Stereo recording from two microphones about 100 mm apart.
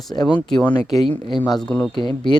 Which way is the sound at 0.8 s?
40° left (ahead or behind).